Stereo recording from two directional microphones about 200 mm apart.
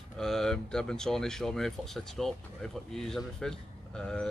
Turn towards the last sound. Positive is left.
turn(degrees=5)  # may be behind; listen again after turning